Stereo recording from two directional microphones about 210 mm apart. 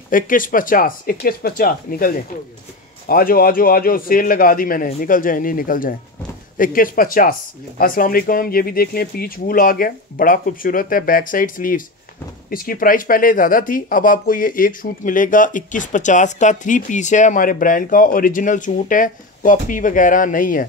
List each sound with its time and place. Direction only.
0.1 s speech: 40° left (ahead or behind)